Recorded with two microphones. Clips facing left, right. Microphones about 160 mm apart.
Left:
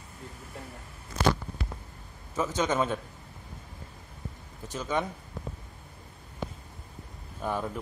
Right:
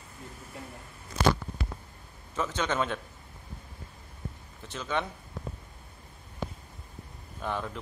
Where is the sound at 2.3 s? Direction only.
10° left (ahead or behind).